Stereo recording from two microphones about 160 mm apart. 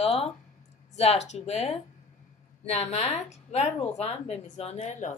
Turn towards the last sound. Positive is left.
turn(degrees=45)  # may be behind; listen again after turning